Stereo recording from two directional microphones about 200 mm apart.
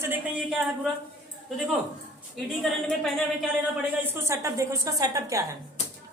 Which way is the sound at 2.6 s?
Centre (ahead or behind).